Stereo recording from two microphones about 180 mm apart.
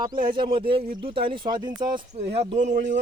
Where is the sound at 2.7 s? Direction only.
85° right.